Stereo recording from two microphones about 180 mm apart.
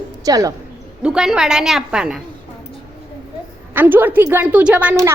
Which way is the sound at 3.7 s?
10° right (ahead or behind).